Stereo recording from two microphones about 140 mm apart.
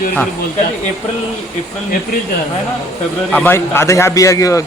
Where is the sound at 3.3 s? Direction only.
15° left (ahead or behind).